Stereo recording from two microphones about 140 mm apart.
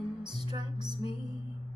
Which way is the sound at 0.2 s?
30° right (ahead or behind).